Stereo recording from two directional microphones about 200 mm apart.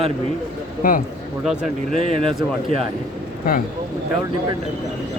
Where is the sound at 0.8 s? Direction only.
45° left (ahead or behind).